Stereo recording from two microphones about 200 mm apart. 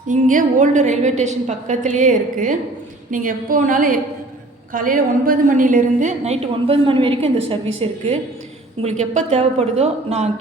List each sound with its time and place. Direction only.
0.1 s a woman's voice: 40° right (ahead or behind)